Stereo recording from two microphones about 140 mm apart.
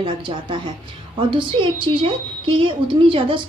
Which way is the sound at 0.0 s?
35° right (ahead or behind).